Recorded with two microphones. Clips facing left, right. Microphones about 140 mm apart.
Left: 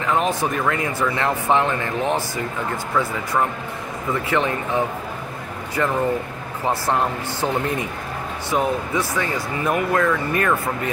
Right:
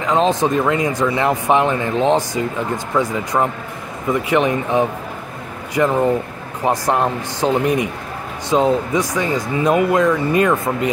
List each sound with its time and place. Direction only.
0.0 s speech: 20° right (ahead or behind)